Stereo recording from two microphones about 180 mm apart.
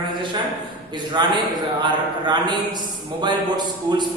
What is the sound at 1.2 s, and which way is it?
A man's voice, 25° right (ahead or behind).